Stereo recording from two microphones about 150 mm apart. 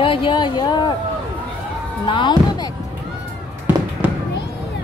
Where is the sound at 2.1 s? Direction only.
30° left (ahead or behind).